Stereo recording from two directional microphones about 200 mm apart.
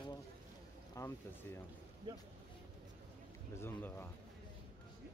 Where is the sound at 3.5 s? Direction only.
10° left (ahead or behind).